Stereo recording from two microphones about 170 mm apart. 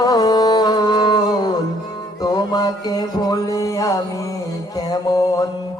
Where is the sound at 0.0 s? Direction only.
20° left (ahead or behind).